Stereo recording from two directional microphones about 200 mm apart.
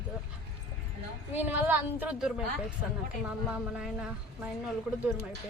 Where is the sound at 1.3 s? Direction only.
10° right (ahead or behind).